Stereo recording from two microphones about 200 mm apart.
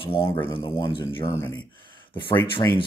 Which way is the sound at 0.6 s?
25° left (ahead or behind).